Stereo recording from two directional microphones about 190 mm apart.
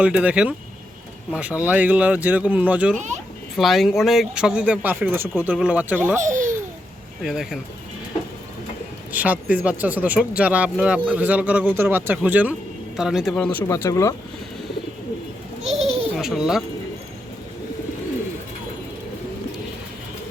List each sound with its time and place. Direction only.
0.0 s speech: 5° right (ahead or behind)
2.9 s speech: 40° right (ahead or behind)
3.6 s speech: centre (ahead or behind)
6.1 s speech: 40° right (ahead or behind)
7.2 s speech: centre (ahead or behind)
9.1 s speech: 10° right (ahead or behind); by 14.1 s 15° left (ahead or behind)
15.8 s a sound: 30° right (ahead or behind)
16.1 s speech: 5° right (ahead or behind)